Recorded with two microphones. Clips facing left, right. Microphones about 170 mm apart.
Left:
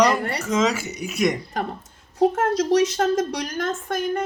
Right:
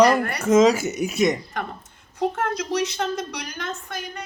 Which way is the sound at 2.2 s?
40° left (ahead or behind).